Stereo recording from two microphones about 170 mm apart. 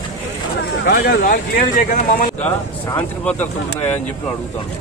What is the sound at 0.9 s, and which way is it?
Speech, 55° left (ahead or behind).